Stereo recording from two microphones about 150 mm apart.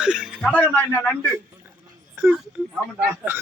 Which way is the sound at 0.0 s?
5° right (ahead or behind).